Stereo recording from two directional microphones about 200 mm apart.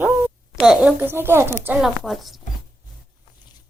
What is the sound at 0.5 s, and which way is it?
A woman's voice, 5° right (ahead or behind).